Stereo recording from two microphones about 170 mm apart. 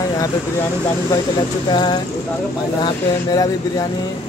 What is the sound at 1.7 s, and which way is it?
Speech, 25° left (ahead or behind).